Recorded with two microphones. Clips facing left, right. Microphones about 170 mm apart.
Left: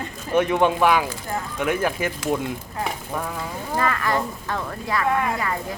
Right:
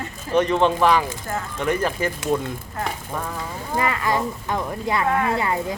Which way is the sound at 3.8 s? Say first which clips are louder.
Right 1 dB; 15° right (ahead or behind).